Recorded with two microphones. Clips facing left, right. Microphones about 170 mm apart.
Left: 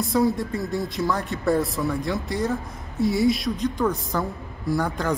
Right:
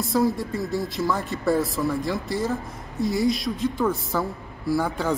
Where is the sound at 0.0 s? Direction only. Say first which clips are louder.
Left 1 dB; centre (ahead or behind).